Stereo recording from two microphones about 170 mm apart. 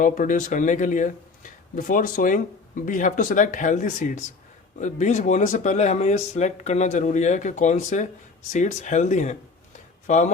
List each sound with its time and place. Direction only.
0.0 s speech: 50° left (ahead or behind)